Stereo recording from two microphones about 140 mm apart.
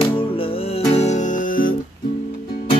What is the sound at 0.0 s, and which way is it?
Music, 40° left (ahead or behind).